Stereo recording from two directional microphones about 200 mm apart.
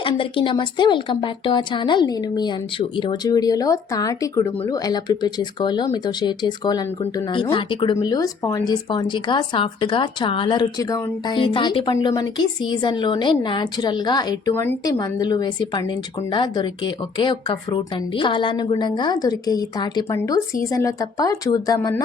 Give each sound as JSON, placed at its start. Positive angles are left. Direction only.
{"t": 0.0, "sound": "speech", "side_deg": 25}